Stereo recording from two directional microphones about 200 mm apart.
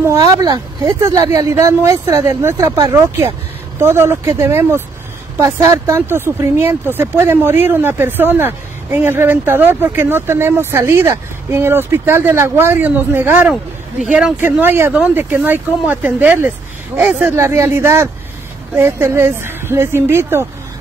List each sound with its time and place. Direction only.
0.0 s speech: 15° right (ahead or behind)